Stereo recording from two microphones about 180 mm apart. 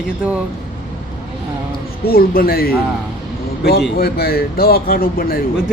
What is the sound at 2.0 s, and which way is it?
A man's voice, 55° left (ahead or behind).